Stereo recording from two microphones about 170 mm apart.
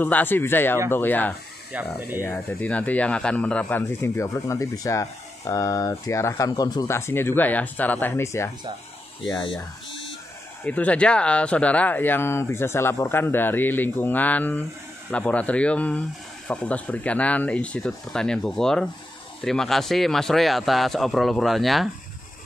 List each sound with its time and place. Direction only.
0.0 s speech: 10° left (ahead or behind)
1.7 s speech: 10° right (ahead or behind)
2.2 s speech: 10° left (ahead or behind)
9.3 s speech: 25° left (ahead or behind)
10.6 s speech: 10° left (ahead or behind)